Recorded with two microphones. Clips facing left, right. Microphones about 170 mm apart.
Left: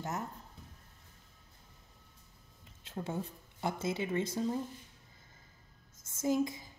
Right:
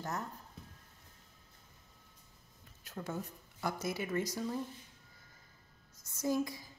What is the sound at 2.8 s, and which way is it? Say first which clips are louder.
Speech: left 3 dB; 25° left (ahead or behind).